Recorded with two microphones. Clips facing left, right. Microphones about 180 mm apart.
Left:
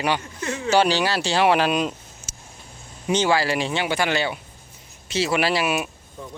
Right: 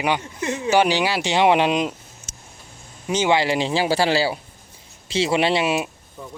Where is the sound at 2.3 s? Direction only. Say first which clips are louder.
Left 1 dB; 5° left (ahead or behind).